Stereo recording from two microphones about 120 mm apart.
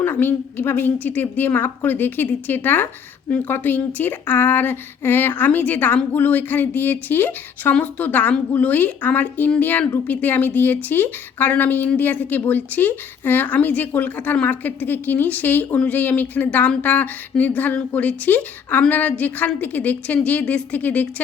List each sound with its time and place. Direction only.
0.0 s a woman's voice: 15° left (ahead or behind)